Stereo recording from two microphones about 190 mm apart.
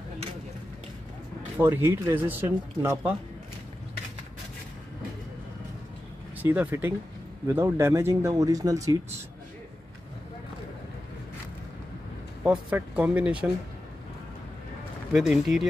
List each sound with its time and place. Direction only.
1.6 s speech: 10° right (ahead or behind)
6.4 s speech: 10° right (ahead or behind)
12.4 s speech: 5° right (ahead or behind)
15.1 s speech: centre (ahead or behind)